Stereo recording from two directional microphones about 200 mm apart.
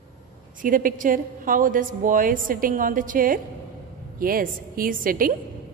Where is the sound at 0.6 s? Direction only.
45° right (ahead or behind).